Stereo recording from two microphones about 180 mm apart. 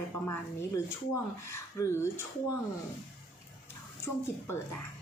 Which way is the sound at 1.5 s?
15° left (ahead or behind).